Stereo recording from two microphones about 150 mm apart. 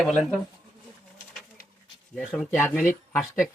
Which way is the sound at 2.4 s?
15° left (ahead or behind).